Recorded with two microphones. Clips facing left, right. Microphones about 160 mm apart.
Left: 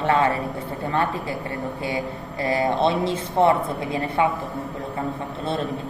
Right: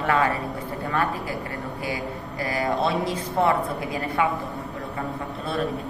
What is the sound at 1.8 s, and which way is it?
Speech, 25° left (ahead or behind).